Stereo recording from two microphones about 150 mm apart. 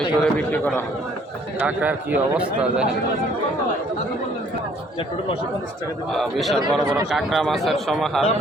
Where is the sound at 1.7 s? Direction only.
10° right (ahead or behind).